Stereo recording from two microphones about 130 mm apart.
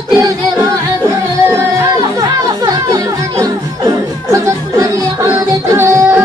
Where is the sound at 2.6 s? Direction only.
25° right (ahead or behind).